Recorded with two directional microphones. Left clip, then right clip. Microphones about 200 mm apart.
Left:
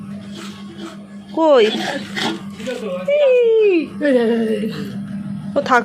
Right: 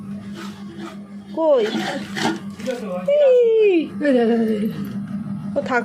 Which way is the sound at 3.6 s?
10° right (ahead or behind).